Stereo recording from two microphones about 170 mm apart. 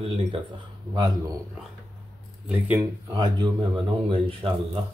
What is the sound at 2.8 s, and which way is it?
Speech, 25° right (ahead or behind).